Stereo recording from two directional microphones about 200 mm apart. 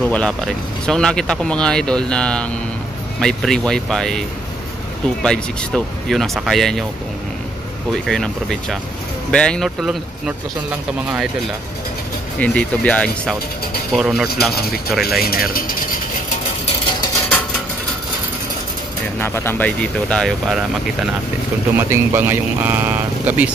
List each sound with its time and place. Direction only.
0.0 s speech: 5° left (ahead or behind)
5.2 s speech: 5° left (ahead or behind)
8.1 s speech: centre (ahead or behind)
12.4 s speech: 5° left (ahead or behind)
15.2 s speech: 45° left (ahead or behind)
19.1 s speech: 10° left (ahead or behind)
21.7 s speech: 10° right (ahead or behind)